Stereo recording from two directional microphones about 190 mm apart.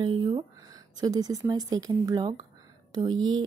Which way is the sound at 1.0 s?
20° right (ahead or behind).